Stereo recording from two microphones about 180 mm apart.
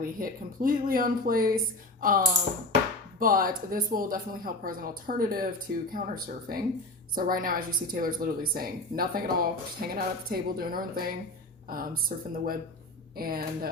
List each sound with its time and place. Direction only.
0.0 s speech: 55° right (ahead or behind)